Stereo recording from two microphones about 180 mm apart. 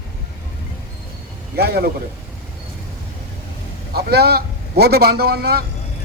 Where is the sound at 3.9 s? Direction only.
60° right (ahead or behind).